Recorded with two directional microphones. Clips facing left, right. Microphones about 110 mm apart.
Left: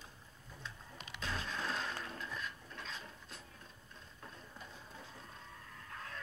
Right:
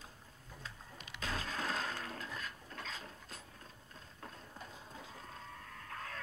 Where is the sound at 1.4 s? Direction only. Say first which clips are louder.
Right 2 dB; 40° right (ahead or behind).